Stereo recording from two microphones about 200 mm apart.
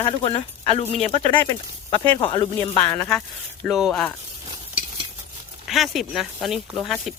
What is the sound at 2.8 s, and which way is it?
Speech, 5° left (ahead or behind).